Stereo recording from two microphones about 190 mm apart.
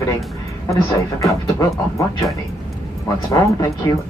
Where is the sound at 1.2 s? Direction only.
15° left (ahead or behind).